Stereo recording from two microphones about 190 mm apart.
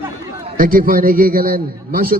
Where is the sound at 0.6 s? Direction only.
50° right (ahead or behind).